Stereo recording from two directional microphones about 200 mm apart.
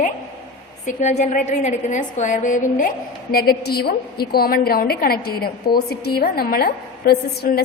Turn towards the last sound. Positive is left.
turn(degrees=50)  # may be behind; listen again after turning